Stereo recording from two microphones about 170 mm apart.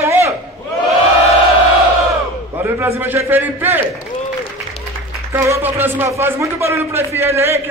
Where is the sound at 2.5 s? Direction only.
15° right (ahead or behind).